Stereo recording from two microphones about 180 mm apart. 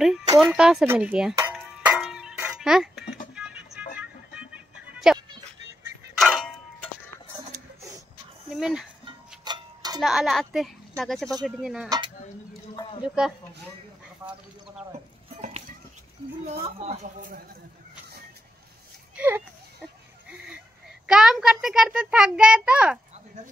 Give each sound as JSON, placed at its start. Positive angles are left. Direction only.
{"t": 0.4, "sound": "a child's voice", "side_deg": -5}
{"t": 1.5, "sound": "music", "side_deg": -5}
{"t": 8.5, "sound": "a sound", "side_deg": -5}
{"t": 9.4, "sound": "clock", "side_deg": -25}
{"t": 9.9, "sound": "a child's voice", "side_deg": 0}
{"t": 13.0, "sound": "a child's voice", "side_deg": -5}
{"t": 16.4, "sound": "speech", "side_deg": -35}
{"t": 19.1, "sound": "speech", "side_deg": -10}
{"t": 21.1, "sound": "a child's voice", "side_deg": -5}